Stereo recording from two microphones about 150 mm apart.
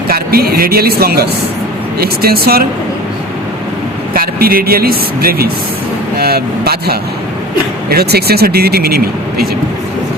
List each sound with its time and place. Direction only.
0.1 s speech: 90° right
4.1 s speech: 80° right